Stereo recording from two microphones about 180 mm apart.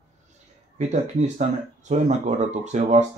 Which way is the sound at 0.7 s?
40° right (ahead or behind).